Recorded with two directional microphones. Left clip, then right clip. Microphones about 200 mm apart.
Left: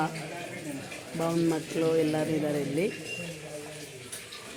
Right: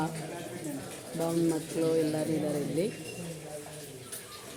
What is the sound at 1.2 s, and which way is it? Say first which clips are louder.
Speech: left 2 dB; 25° left (ahead or behind).